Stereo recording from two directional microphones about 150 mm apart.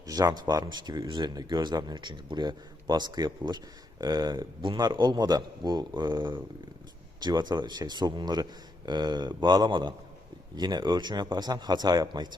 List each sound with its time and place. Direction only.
0.0 s speech: 25° right (ahead or behind)